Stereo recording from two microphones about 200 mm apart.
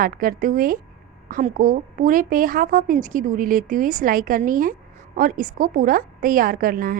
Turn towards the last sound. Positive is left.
turn(degrees=-45)  # may be behind; listen again after turning